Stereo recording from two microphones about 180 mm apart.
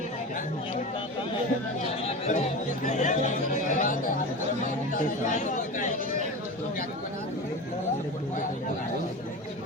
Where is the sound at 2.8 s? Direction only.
45° left (ahead or behind).